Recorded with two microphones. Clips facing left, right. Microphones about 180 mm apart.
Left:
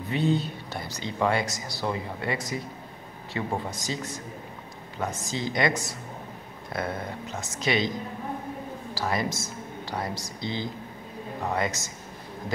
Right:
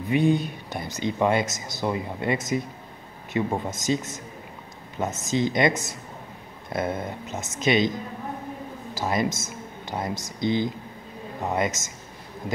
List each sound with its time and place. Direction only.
0.1 s speech: 15° right (ahead or behind)
8.9 s speech: 20° right (ahead or behind)